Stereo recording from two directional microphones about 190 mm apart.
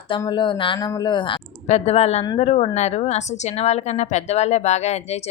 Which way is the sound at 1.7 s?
35° left (ahead or behind).